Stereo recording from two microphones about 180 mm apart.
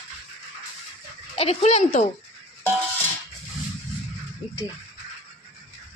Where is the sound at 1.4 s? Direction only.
35° left (ahead or behind).